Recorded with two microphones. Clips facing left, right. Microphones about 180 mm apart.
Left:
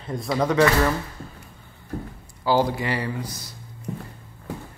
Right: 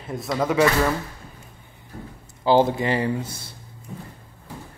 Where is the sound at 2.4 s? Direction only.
20° right (ahead or behind).